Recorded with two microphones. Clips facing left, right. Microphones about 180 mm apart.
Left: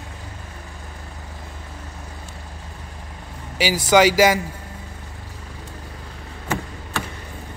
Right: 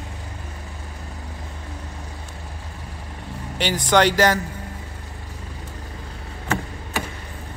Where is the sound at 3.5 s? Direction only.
5° left (ahead or behind).